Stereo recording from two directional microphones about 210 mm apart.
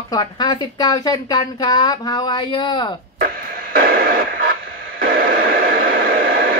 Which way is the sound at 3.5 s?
40° right (ahead or behind).